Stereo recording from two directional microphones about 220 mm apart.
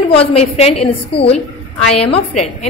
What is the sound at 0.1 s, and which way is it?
A woman's voice, 25° left (ahead or behind).